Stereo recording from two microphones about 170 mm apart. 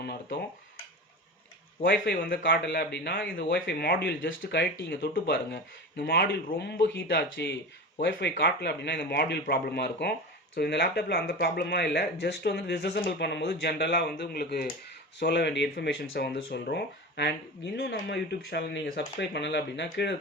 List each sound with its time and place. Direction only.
0.0 s speech: 80° left
1.8 s speech: 80° left
3.5 s speech: 75° left (ahead or behind)
15.2 s speech: 85° left